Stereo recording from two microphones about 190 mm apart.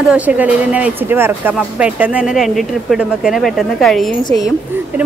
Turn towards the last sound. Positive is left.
turn(degrees=0)  # may be behind; listen again after turning